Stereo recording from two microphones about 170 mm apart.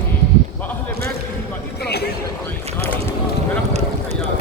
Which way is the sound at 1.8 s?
70° left (ahead or behind).